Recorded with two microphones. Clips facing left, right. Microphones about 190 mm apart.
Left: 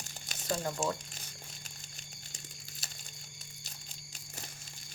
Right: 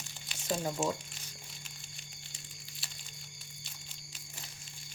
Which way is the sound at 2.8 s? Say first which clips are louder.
Left 2 dB; 45° left (ahead or behind).